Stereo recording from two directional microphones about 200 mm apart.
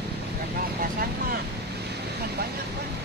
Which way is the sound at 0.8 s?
45° right (ahead or behind).